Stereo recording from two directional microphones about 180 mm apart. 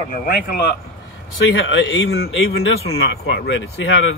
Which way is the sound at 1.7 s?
85° left.